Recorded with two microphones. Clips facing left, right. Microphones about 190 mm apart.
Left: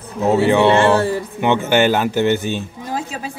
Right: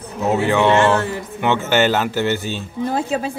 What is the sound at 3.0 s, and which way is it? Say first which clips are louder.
Speech: right 5 dB; 30° right (ahead or behind).